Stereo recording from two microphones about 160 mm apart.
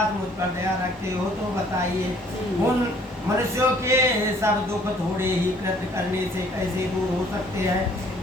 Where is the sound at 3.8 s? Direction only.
15° right (ahead or behind).